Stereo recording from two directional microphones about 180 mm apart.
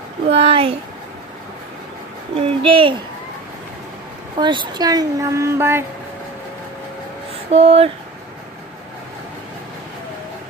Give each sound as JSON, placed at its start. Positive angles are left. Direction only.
{"t": 0.3, "sound": "speech", "side_deg": -30}
{"t": 2.3, "sound": "speech", "side_deg": -30}
{"t": 4.4, "sound": "a woman's voice", "side_deg": -25}
{"t": 7.5, "sound": "speech", "side_deg": -35}